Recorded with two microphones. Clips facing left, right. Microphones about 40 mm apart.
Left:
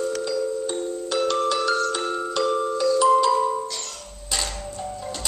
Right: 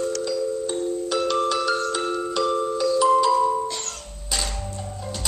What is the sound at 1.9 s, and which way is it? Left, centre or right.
Glockenspiel, centre.